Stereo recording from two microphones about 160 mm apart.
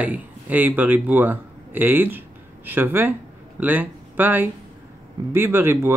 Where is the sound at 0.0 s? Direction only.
10° right (ahead or behind).